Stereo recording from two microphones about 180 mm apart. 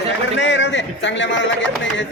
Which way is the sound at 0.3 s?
85° left.